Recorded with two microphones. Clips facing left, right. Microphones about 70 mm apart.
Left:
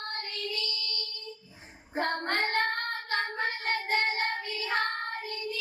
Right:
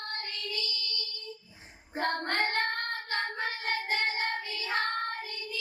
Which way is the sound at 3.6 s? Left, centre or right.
Left.